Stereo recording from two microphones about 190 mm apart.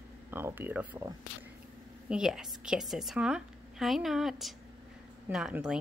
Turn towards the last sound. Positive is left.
turn(degrees=-5)  # may be behind; listen again after turning